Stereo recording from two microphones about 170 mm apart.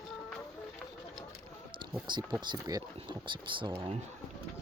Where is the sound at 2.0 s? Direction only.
25° right (ahead or behind).